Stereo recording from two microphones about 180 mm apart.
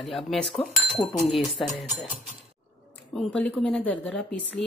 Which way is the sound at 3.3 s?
5° left (ahead or behind).